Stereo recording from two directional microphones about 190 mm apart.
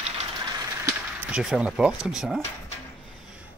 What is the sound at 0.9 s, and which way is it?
Speech, 10° right (ahead or behind).